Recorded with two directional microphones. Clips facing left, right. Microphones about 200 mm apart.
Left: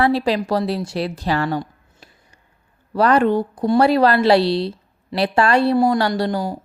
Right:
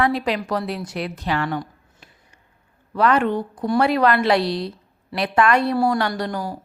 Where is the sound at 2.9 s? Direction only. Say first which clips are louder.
Left 3 dB; 35° left (ahead or behind).